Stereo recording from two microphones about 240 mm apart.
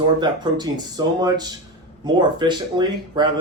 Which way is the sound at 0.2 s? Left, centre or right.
Centre.